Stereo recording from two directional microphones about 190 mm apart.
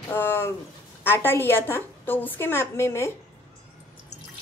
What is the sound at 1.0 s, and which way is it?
A woman's voice, 10° left (ahead or behind).